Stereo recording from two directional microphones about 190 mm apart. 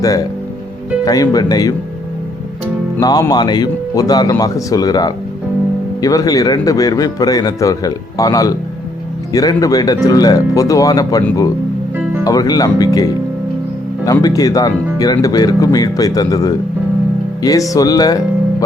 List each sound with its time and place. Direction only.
1.0 s speech: 20° left (ahead or behind)
3.0 s speech: 20° left (ahead or behind)
17.7 s speech: 20° left (ahead or behind)